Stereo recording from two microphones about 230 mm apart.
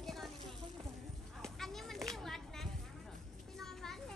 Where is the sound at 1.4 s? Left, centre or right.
Centre.